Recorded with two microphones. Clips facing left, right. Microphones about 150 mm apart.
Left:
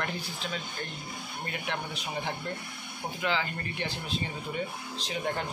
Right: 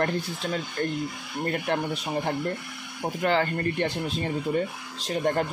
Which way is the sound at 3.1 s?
50° right (ahead or behind).